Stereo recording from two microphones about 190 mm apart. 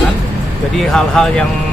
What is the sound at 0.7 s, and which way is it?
Speech, 5° left (ahead or behind).